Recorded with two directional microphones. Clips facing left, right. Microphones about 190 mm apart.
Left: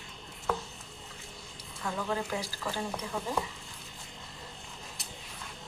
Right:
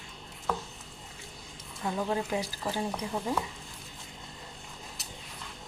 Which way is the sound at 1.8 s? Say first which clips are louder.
Right 3 dB; 20° right (ahead or behind).